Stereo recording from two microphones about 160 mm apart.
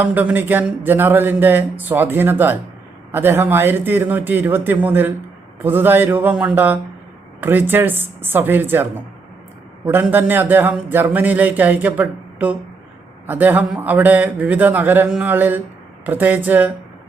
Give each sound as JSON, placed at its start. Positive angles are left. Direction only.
{"t": 0.0, "sound": "speech", "side_deg": -10}